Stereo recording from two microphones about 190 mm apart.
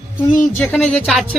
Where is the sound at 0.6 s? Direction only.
10° left (ahead or behind).